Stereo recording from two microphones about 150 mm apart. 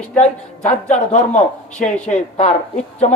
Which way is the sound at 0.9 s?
55° left (ahead or behind).